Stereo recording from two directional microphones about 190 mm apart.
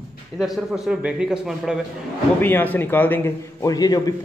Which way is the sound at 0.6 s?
Centre (ahead or behind).